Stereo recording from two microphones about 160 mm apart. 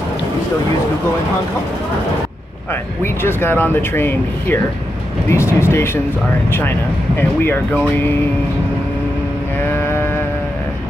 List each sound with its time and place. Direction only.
2.7 s speech: 15° left (ahead or behind)
7.2 s speech: 10° left (ahead or behind)